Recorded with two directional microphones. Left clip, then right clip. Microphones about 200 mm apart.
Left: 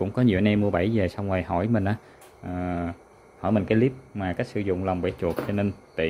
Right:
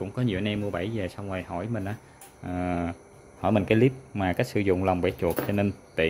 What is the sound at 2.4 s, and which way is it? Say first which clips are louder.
Speech: right 1 dB; 10° right (ahead or behind).